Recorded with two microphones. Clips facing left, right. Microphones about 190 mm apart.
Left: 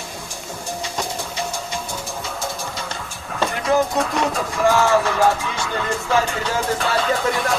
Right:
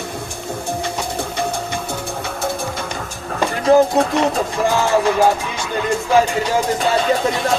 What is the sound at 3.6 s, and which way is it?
Music, 35° right (ahead or behind).